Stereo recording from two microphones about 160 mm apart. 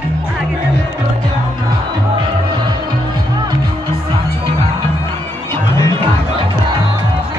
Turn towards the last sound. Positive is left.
turn(degrees=20)  # may be behind; listen again after turning